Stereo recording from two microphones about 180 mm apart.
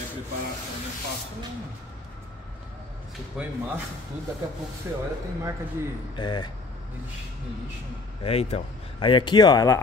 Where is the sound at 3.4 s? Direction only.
5° right (ahead or behind).